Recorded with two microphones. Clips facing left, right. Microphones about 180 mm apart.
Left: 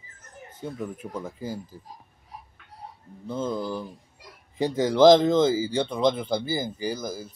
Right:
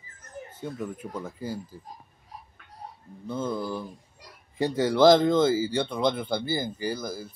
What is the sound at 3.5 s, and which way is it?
Speech, 15° left (ahead or behind).